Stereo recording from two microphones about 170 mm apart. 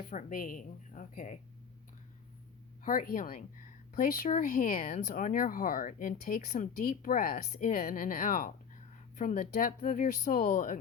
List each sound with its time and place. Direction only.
0.1 s speech: 50° left (ahead or behind)
2.8 s speech: 55° left (ahead or behind)